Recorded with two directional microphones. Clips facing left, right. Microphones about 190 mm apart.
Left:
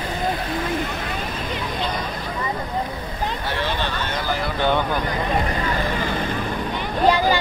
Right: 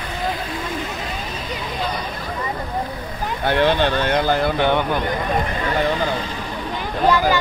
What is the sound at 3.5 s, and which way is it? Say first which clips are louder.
Speech: right 12 dB; 60° right (ahead or behind).